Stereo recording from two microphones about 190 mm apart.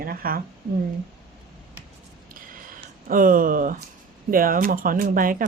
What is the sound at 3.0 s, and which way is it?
A woman's voice, 45° right (ahead or behind).